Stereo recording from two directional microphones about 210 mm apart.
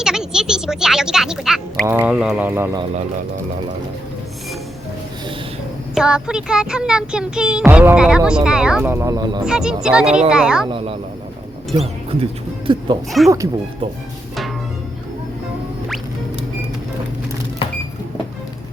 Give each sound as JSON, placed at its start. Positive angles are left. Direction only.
{"t": 0.0, "sound": "speech", "side_deg": -5}
{"t": 5.9, "sound": "speech", "side_deg": -5}
{"t": 9.5, "sound": "speech", "side_deg": -5}
{"t": 10.7, "sound": "speech", "side_deg": -25}
{"t": 13.1, "sound": "speech", "side_deg": 0}